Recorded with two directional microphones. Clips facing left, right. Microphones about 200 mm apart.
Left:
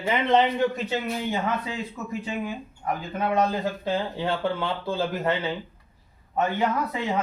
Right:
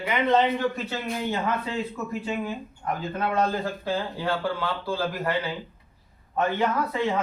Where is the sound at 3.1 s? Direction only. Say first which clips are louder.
Left 2 dB; 20° left (ahead or behind).